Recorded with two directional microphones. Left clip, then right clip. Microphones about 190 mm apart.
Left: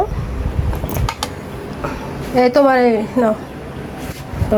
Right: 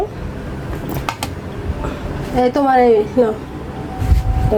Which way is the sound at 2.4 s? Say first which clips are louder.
Left 1 dB; 20° left (ahead or behind).